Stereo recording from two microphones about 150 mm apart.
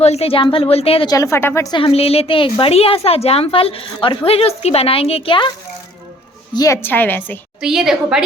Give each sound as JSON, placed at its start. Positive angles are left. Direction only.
{"t": 0.0, "sound": "a woman's voice", "side_deg": 45}
{"t": 1.0, "sound": "a woman's voice", "side_deg": 25}
{"t": 1.7, "sound": "a woman's voice", "side_deg": 40}
{"t": 6.5, "sound": "a woman's voice", "side_deg": 25}
{"t": 6.8, "sound": "a woman's voice", "side_deg": 10}
{"t": 7.6, "sound": "a woman's voice", "side_deg": -5}